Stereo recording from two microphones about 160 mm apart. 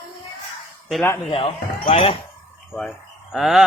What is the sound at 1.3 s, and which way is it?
Speech, 35° left (ahead or behind).